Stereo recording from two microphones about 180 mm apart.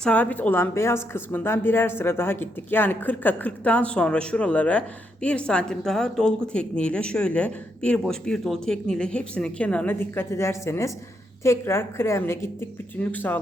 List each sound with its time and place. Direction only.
0.0 s a woman's voice: 10° left (ahead or behind)